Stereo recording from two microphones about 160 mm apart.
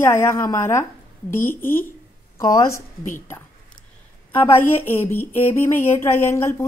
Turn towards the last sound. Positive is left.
turn(degrees=15)  # may be behind; listen again after turning